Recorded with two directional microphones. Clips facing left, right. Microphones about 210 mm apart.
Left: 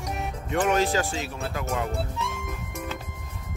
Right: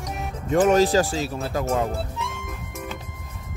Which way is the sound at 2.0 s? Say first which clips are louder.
Even; centre (ahead or behind).